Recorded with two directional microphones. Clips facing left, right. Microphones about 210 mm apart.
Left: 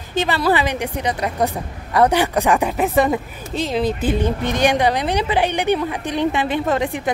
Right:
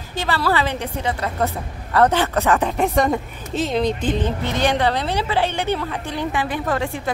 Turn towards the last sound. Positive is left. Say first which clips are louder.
# left 3 dB
turn(degrees=20)  # may be behind; listen again after turning